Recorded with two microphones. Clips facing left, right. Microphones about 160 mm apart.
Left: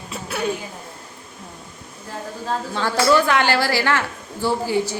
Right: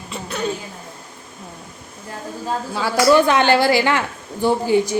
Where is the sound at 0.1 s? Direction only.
5° left (ahead or behind).